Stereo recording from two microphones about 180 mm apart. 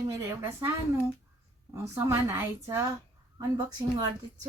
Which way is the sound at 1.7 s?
15° right (ahead or behind).